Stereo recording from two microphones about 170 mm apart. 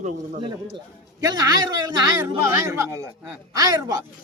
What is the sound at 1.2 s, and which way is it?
A man's voice, 20° right (ahead or behind).